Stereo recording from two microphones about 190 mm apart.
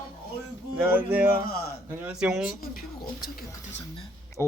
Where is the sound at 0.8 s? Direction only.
10° right (ahead or behind).